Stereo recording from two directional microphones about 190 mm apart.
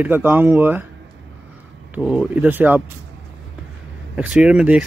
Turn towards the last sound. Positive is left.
turn(degrees=-5)  # may be behind; listen again after turning